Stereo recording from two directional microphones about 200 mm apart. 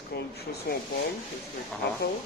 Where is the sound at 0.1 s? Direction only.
55° left (ahead or behind).